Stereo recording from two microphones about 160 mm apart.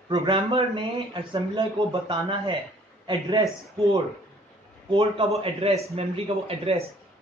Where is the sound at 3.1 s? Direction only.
25° right (ahead or behind).